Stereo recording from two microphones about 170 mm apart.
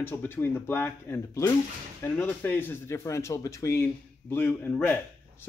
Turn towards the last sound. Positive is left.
turn(degrees=10)  # may be behind; listen again after turning